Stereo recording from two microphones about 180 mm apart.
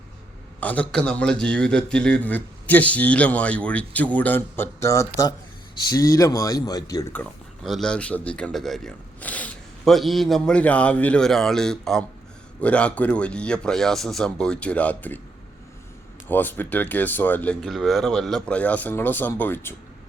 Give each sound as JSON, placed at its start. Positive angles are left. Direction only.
{"t": 0.6, "sound": "a man's voice", "side_deg": 10}
{"t": 7.1, "sound": "speech", "side_deg": 5}
{"t": 16.3, "sound": "a man's voice", "side_deg": 10}